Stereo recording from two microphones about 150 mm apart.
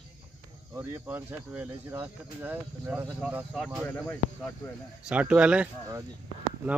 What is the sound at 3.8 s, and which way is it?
Speech, 10° left (ahead or behind).